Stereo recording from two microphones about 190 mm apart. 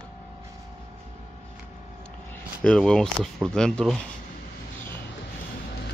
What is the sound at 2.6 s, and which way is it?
Speech, 5° left (ahead or behind).